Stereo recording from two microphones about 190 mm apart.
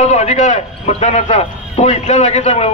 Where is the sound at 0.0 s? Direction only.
35° left (ahead or behind).